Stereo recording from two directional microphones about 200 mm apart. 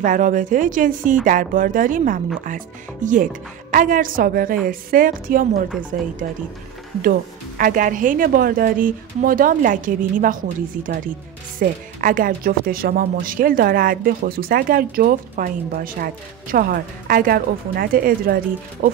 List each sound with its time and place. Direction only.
0.0 s speech: 40° right (ahead or behind)